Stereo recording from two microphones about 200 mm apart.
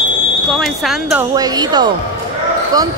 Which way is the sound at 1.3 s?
20° right (ahead or behind).